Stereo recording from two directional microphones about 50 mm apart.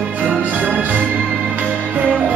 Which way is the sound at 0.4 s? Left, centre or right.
Right.